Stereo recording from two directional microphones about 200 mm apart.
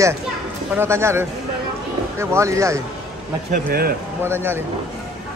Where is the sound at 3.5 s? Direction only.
45° right (ahead or behind).